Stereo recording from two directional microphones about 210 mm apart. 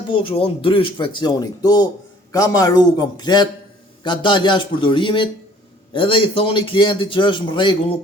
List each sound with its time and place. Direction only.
0.1 s a man's voice: 25° left (ahead or behind)